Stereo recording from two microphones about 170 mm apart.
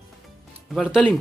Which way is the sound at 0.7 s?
Centre (ahead or behind).